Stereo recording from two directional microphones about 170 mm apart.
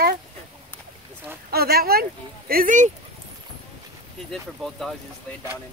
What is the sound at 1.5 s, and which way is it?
Speech, 65° right (ahead or behind).